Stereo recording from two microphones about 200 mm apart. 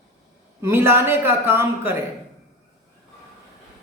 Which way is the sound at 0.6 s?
10° right (ahead or behind).